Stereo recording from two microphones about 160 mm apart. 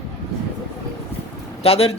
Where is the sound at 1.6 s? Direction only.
40° left (ahead or behind).